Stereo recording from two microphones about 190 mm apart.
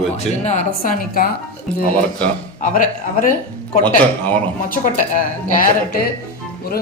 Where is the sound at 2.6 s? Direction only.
45° left (ahead or behind).